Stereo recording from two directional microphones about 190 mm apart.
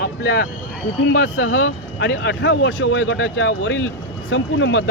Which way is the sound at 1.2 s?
90° left.